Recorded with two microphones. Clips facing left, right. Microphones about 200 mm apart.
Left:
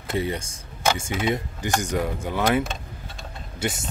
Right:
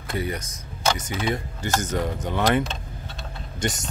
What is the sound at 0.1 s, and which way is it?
Speech, 25° left (ahead or behind).